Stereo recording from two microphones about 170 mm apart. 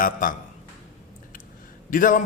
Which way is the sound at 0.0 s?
50° left (ahead or behind).